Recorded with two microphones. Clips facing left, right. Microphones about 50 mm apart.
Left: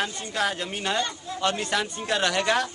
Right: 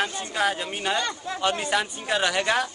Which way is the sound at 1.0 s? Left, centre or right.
Right.